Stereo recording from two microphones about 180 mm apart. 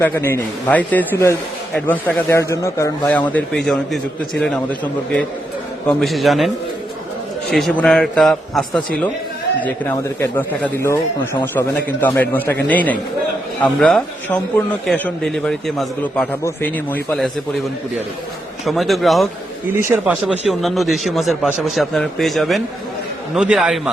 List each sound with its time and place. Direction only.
0.0 s a man's voice: 10° left (ahead or behind)
5.9 s a man's voice: centre (ahead or behind)
7.5 s a man's voice: centre (ahead or behind)
18.6 s a man's voice: centre (ahead or behind)
19.9 s speech: 15° right (ahead or behind)
20.2 s a man's voice: centre (ahead or behind)